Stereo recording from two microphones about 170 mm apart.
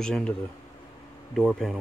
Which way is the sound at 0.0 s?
5° left (ahead or behind).